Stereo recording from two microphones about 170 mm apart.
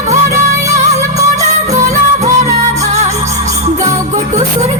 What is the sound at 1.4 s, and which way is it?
Music, 40° right (ahead or behind).